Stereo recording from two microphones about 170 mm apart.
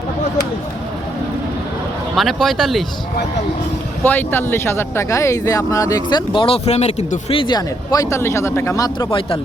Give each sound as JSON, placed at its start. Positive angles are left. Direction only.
{"t": 2.1, "sound": "speech", "side_deg": 0}
{"t": 4.0, "sound": "speech", "side_deg": 10}